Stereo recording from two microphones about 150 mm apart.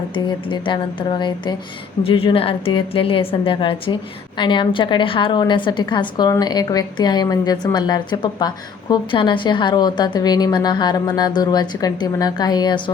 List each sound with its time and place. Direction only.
0.1 s a woman's voice: 30° left (ahead or behind)